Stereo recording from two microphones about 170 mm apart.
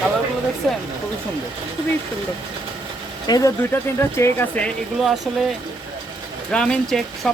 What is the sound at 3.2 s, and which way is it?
Speech, 20° left (ahead or behind).